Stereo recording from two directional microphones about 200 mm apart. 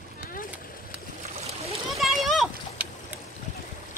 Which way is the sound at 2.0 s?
Centre (ahead or behind).